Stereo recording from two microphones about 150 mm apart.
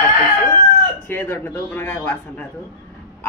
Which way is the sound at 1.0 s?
15° left (ahead or behind).